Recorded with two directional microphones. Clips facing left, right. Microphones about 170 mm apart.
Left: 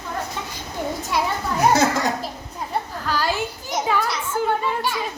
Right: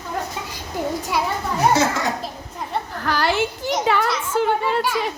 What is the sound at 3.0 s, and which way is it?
A child's voice, 70° right (ahead or behind).